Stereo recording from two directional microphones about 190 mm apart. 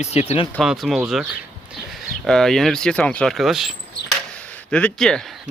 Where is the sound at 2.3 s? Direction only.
5° left (ahead or behind).